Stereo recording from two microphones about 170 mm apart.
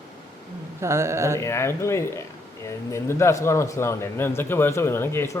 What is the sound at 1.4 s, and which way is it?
A man's voice, 15° left (ahead or behind).